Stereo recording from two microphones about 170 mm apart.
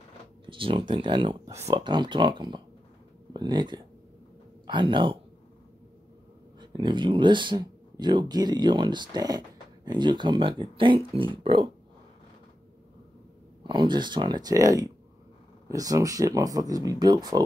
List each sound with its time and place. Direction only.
0.5 s speech: 30° right (ahead or behind)
6.6 s speech: 25° right (ahead or behind)
13.7 s speech: 25° right (ahead or behind)